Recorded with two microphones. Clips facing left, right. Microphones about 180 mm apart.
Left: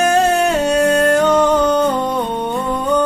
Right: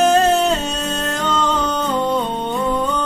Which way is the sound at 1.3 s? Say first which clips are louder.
Left 7 dB; 10° left (ahead or behind).